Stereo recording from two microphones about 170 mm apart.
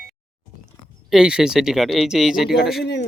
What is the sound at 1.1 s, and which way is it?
Speech, 5° right (ahead or behind).